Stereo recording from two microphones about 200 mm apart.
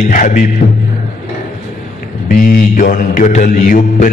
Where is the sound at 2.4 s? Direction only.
45° left (ahead or behind).